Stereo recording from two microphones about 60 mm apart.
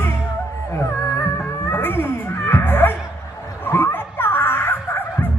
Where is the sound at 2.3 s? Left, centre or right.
Left.